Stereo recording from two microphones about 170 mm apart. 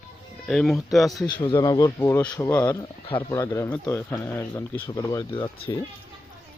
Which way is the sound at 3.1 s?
30° left (ahead or behind).